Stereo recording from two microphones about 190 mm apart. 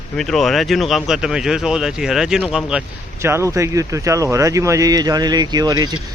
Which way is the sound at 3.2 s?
15° right (ahead or behind).